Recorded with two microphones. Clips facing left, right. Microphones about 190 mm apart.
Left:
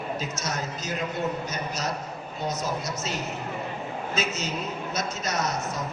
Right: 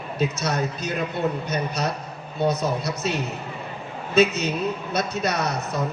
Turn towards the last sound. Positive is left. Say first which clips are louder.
# right 3 dB
turn(degrees=-60)  # may be behind; listen again after turning